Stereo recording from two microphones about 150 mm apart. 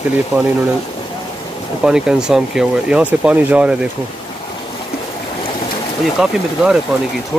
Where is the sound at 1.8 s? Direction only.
5° right (ahead or behind).